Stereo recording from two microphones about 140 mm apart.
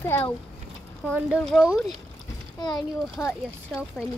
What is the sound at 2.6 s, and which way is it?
Speech, 30° left (ahead or behind).